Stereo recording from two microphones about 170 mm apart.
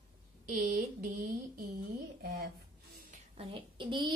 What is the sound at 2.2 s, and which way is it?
Speech, 75° right (ahead or behind).